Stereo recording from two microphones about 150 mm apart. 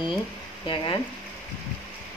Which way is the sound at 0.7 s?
30° left (ahead or behind).